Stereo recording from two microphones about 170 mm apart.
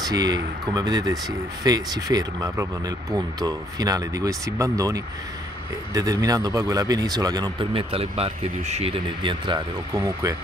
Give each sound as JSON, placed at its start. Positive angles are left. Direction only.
{"t": 0.0, "sound": "speech", "side_deg": -25}
{"t": 7.9, "sound": "speech", "side_deg": -35}